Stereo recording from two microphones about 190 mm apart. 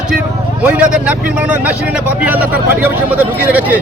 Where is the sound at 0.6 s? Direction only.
5° right (ahead or behind).